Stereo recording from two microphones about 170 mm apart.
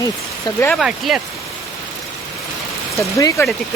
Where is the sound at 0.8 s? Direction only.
Centre (ahead or behind).